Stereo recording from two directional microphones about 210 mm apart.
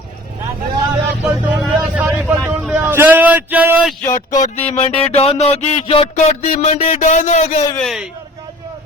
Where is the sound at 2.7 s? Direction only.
10° right (ahead or behind).